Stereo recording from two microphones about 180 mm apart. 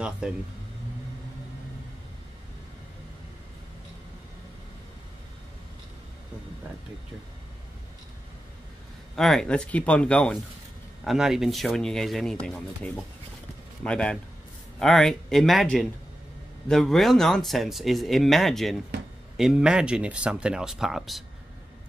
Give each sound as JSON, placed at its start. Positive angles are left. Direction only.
{"t": 0.2, "sound": "speech", "side_deg": -5}
{"t": 9.1, "sound": "speech", "side_deg": 0}